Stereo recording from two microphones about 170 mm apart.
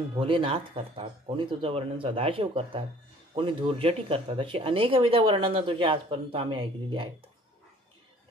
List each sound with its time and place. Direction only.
0.2 s speech: 30° right (ahead or behind)